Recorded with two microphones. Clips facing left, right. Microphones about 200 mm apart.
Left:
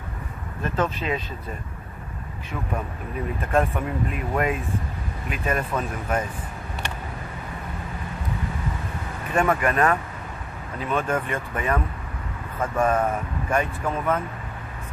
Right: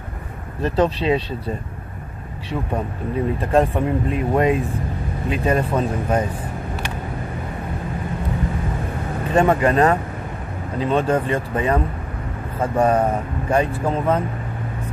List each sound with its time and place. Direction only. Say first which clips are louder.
0.6 s speech: right 7 dB; 35° right (ahead or behind)
3.3 s speech: right 4 dB; 30° right (ahead or behind)
9.3 s speech: right 5 dB; 30° right (ahead or behind)